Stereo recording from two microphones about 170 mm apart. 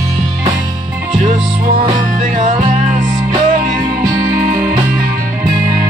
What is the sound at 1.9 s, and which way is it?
Music, 45° right (ahead or behind).